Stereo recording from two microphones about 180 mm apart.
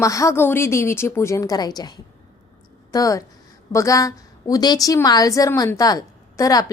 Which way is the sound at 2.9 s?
20° left (ahead or behind).